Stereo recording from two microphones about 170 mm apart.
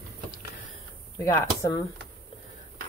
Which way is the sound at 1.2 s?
15° left (ahead or behind).